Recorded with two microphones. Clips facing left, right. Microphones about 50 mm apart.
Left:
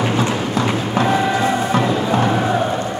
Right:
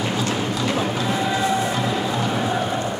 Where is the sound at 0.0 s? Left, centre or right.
Left.